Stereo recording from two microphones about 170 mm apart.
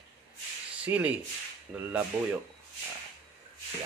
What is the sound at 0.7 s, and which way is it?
Speech, 5° right (ahead or behind).